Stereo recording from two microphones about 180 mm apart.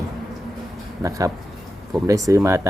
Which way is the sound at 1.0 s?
20° right (ahead or behind).